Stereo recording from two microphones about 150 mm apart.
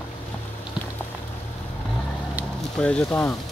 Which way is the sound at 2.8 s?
10° left (ahead or behind).